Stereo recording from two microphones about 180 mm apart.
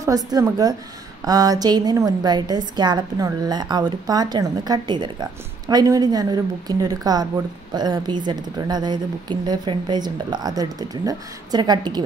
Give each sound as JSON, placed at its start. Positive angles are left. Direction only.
{"t": 0.0, "sound": "a woman's voice", "side_deg": -20}